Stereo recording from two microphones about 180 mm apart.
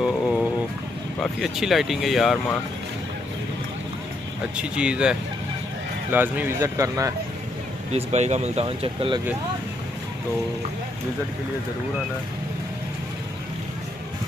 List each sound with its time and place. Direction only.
0.0 s a sound: centre (ahead or behind)
1.2 s speech: centre (ahead or behind)
4.6 s speech: 5° right (ahead or behind)
6.1 s speech: 10° right (ahead or behind)
7.9 s speech: 40° right (ahead or behind)